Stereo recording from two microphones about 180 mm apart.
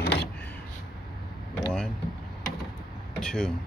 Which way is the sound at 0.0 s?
65° left (ahead or behind).